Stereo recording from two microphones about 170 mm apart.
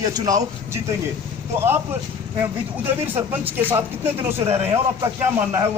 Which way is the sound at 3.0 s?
10° right (ahead or behind).